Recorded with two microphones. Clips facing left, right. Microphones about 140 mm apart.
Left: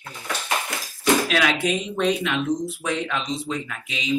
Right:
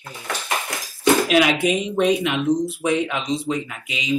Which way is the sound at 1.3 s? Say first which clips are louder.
Right 4 dB; 15° right (ahead or behind).